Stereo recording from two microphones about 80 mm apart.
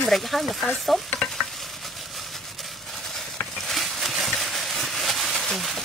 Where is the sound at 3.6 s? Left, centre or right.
Centre.